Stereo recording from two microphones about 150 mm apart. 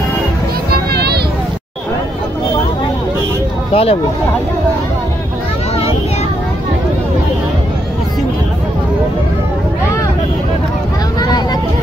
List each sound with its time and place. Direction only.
0.7 s children playing: 90° right
3.7 s speech: 40° left (ahead or behind)